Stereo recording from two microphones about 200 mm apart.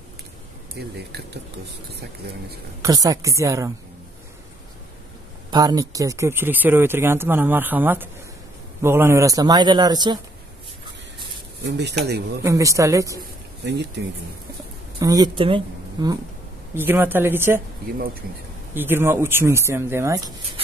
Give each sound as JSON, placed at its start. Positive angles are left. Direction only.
{"t": 0.7, "sound": "speech", "side_deg": -55}
{"t": 2.8, "sound": "speech", "side_deg": -15}
{"t": 5.5, "sound": "a man's voice", "side_deg": -20}
{"t": 11.6, "sound": "speech", "side_deg": -55}
{"t": 12.4, "sound": "speech", "side_deg": -15}
{"t": 13.7, "sound": "speech", "side_deg": -60}
{"t": 15.0, "sound": "speech", "side_deg": -20}
{"t": 16.7, "sound": "speech", "side_deg": -10}
{"t": 18.8, "sound": "speech", "side_deg": -10}